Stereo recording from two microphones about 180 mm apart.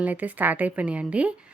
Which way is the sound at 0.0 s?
10° right (ahead or behind).